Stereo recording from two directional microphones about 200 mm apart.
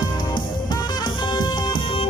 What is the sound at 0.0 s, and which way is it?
Music, 20° left (ahead or behind).